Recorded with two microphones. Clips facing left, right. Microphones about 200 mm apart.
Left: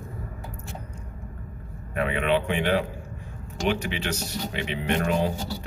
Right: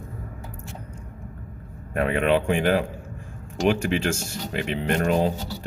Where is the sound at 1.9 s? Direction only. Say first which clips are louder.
Right 3 dB; 50° right (ahead or behind).